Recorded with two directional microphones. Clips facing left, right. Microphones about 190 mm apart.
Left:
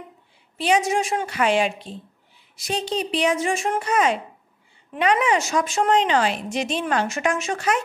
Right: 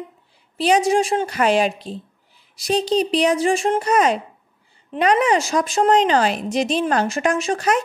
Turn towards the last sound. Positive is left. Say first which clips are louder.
# right 4 dB
turn(degrees=-40)  # may be behind; listen again after turning